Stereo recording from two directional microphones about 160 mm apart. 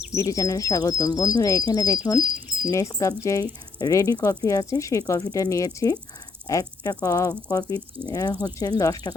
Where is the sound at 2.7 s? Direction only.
20° left (ahead or behind).